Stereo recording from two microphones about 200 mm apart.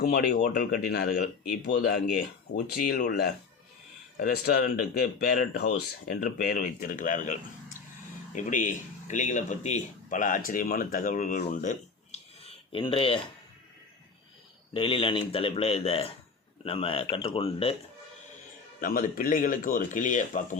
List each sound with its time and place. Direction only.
0.0 s speech: 50° left (ahead or behind)
8.4 s speech: 40° left (ahead or behind)
14.7 s a man's voice: 25° left (ahead or behind)
18.8 s speech: 45° left (ahead or behind)